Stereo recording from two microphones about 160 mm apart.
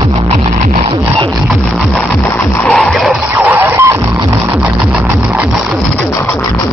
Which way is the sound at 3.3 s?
15° right (ahead or behind).